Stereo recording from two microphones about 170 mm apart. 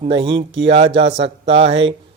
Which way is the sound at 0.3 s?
90° right.